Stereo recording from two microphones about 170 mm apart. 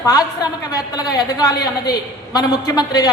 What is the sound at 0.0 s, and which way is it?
A woman's voice, 20° left (ahead or behind).